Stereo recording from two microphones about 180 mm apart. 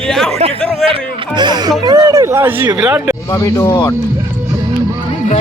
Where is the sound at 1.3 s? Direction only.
25° right (ahead or behind).